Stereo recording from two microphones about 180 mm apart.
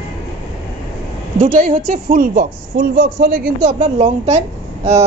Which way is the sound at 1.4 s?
40° right (ahead or behind).